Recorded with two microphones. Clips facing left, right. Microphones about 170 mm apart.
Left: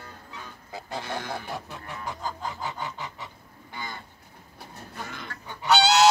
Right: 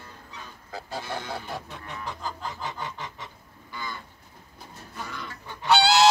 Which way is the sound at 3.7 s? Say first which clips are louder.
Right 1 dB; 55° left (ahead or behind).